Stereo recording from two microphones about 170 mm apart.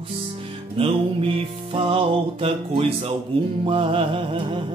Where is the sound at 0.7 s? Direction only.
35° right (ahead or behind).